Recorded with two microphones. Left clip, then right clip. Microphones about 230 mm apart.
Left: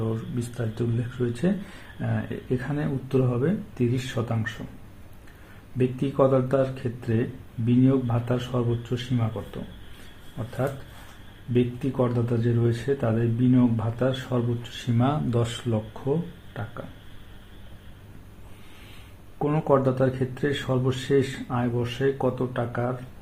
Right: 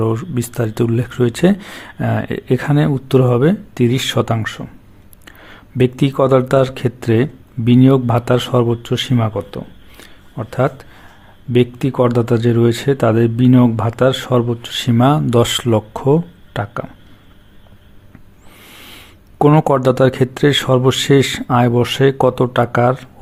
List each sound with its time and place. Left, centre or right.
0.0 s speech: right
5.7 s speech: right
11.5 s speech: right
14.9 s speech: right
19.4 s speech: right